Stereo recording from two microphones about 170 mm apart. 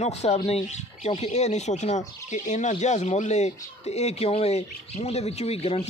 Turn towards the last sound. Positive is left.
turn(degrees=35)  # may be behind; listen again after turning